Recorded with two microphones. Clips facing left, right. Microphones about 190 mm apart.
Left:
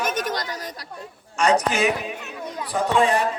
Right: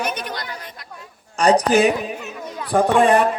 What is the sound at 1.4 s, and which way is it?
Speech, 35° right (ahead or behind).